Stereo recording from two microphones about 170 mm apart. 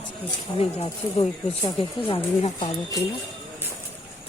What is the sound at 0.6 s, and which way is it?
Speech, 35° left (ahead or behind).